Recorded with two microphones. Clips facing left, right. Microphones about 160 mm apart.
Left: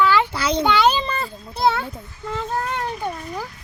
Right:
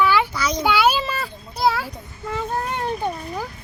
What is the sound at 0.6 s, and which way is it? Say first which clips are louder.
A child's voice: even; 10° right (ahead or behind).